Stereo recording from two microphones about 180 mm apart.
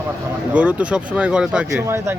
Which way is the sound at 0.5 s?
5° right (ahead or behind).